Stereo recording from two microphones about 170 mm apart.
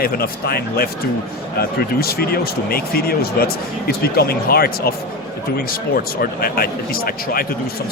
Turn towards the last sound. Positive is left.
turn(degrees=60)  # may be behind; listen again after turning